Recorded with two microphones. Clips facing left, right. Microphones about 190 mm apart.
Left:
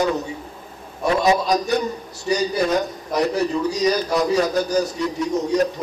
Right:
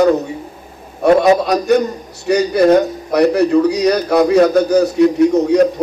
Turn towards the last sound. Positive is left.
turn(degrees=-65)  # may be behind; listen again after turning